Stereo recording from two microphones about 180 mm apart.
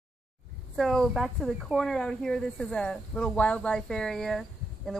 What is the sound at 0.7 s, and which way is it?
Speech, centre (ahead or behind).